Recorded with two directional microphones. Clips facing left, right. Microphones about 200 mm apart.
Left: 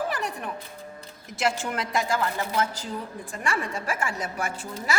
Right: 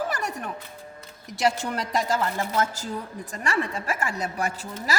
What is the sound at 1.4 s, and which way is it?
Speech, 40° right (ahead or behind).